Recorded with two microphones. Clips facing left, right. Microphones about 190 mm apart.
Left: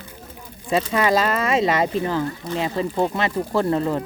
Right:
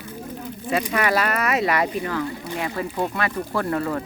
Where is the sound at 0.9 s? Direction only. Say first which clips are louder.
Left 3 dB; 25° left (ahead or behind).